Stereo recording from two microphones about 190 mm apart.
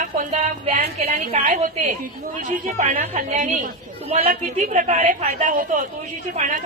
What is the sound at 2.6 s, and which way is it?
A woman's voice, 40° right (ahead or behind).